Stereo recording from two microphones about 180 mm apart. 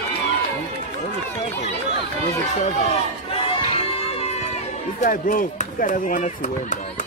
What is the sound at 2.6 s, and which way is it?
Run, 35° left (ahead or behind).